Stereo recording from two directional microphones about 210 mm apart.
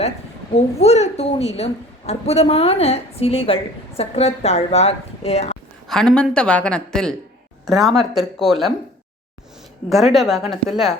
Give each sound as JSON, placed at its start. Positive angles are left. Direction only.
{"t": 0.5, "sound": "a woman's voice", "side_deg": 30}
{"t": 5.9, "sound": "a woman's voice", "side_deg": 5}
{"t": 9.9, "sound": "a woman's voice", "side_deg": 0}